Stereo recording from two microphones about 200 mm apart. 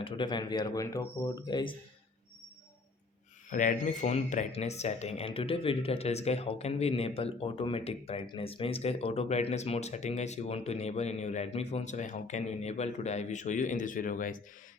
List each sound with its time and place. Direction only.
0.0 s speech: 25° left (ahead or behind)
3.5 s speech: 40° left (ahead or behind)